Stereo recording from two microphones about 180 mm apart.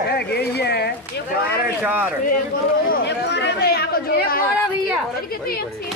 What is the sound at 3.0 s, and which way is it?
Speech, 70° left (ahead or behind).